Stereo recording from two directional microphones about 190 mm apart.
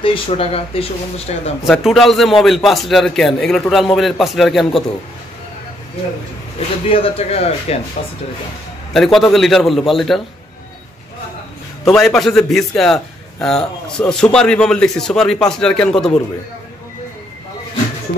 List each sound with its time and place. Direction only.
0.0 s speech: 30° left (ahead or behind)
1.6 s a man's voice: centre (ahead or behind)
6.9 s speech: 30° left (ahead or behind)
8.9 s a man's voice: centre (ahead or behind)
11.8 s a man's voice: centre (ahead or behind)